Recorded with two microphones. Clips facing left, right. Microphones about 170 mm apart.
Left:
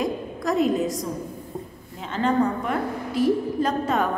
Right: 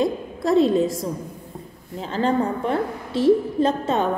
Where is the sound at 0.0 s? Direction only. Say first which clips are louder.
Right 3 dB; 30° right (ahead or behind).